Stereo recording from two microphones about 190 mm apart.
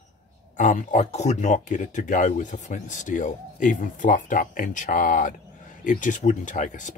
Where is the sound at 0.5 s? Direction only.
45° left (ahead or behind).